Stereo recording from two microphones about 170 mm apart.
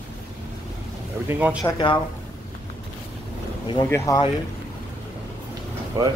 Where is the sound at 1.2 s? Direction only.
10° right (ahead or behind).